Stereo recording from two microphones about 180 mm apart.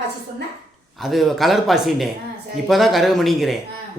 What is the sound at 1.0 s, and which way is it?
Speech, centre (ahead or behind).